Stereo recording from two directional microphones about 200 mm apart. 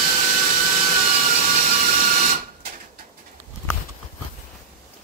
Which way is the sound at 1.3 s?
35° right (ahead or behind).